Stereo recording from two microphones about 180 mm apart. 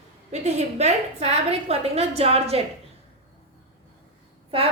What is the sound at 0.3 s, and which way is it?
A woman's voice, 40° right (ahead or behind).